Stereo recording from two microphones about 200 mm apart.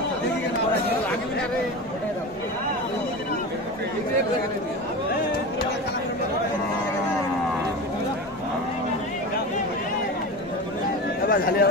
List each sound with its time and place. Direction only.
11.2 s chatter: 45° left (ahead or behind)